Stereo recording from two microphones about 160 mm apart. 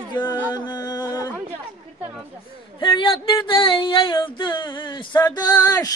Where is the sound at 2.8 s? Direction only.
30° left (ahead or behind).